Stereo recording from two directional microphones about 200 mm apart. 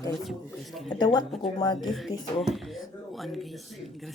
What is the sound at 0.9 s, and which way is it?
Speech, 20° left (ahead or behind).